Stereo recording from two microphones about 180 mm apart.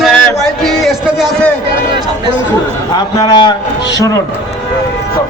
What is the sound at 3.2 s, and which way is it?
A man's voice, 25° left (ahead or behind).